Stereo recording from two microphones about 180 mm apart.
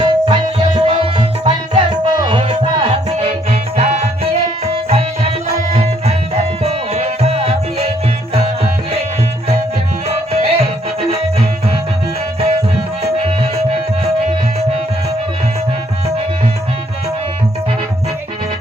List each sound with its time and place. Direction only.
0.0 s music: 25° right (ahead or behind)
10.3 s music: 35° right (ahead or behind)
13.1 s music: 35° right (ahead or behind)